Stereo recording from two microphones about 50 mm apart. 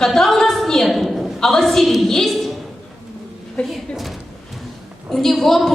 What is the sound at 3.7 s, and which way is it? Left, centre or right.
Speech, centre.